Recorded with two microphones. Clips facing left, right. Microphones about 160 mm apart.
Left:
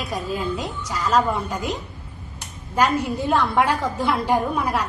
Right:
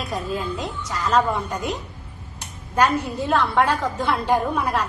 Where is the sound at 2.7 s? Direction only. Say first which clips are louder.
Even; 10° left (ahead or behind).